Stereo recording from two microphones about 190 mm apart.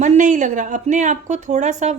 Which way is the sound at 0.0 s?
40° right (ahead or behind).